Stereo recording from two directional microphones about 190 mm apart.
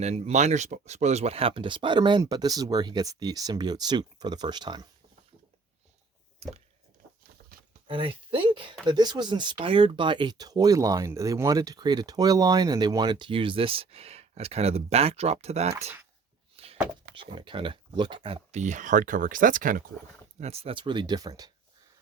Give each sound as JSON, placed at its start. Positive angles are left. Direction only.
{"t": 0.0, "sound": "speech", "side_deg": -35}
{"t": 6.4, "sound": "a sound", "side_deg": -35}
{"t": 7.9, "sound": "speech", "side_deg": -30}
{"t": 16.6, "sound": "a sound", "side_deg": -30}
{"t": 17.2, "sound": "speech", "side_deg": -25}
{"t": 18.5, "sound": "speech", "side_deg": -40}
{"t": 20.4, "sound": "speech", "side_deg": -30}